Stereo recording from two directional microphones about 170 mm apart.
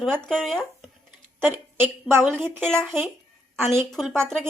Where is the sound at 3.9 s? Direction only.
Centre (ahead or behind).